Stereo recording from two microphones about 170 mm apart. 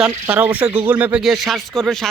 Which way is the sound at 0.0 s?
10° right (ahead or behind).